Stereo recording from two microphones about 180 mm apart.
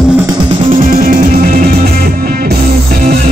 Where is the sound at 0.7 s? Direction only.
50° right (ahead or behind).